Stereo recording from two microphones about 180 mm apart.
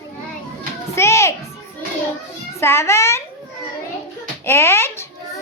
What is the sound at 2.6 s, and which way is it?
Speech, 15° left (ahead or behind).